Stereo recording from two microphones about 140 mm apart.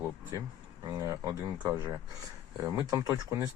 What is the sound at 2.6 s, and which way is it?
Speech, 20° right (ahead or behind).